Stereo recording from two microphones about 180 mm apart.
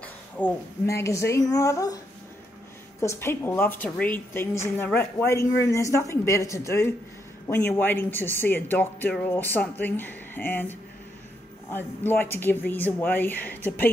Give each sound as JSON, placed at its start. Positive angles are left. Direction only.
{"t": 0.0, "sound": "a woman's voice", "side_deg": 10}
{"t": 3.0, "sound": "a woman's voice", "side_deg": 15}